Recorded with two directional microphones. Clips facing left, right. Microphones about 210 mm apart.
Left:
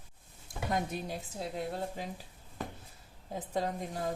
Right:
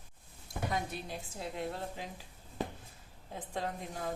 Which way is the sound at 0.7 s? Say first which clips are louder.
Left 6 dB; 45° left (ahead or behind).